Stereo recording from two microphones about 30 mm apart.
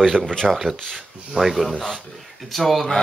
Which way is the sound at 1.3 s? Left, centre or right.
Centre.